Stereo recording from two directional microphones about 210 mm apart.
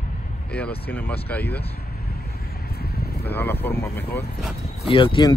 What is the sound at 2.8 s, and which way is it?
Vehicle, 50° left (ahead or behind).